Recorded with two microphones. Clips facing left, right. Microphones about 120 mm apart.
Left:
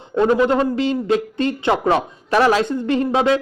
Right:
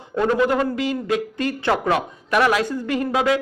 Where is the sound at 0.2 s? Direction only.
20° left (ahead or behind).